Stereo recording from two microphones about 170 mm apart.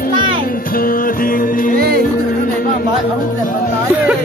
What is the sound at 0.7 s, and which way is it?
Music, 55° left (ahead or behind).